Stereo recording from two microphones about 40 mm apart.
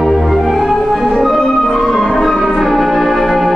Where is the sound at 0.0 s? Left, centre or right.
Centre.